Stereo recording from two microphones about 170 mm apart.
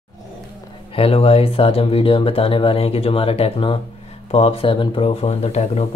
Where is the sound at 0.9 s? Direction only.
35° left (ahead or behind).